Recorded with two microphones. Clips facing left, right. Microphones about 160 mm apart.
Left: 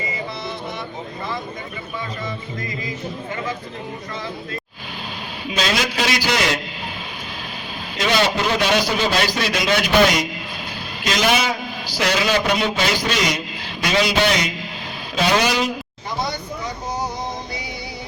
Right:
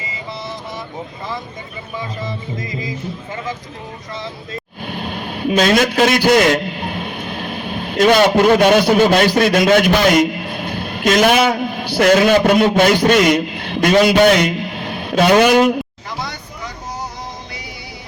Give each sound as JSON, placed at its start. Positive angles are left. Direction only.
{"t": 2.6, "sound": "music", "side_deg": -20}
{"t": 4.9, "sound": "a man's voice", "side_deg": -55}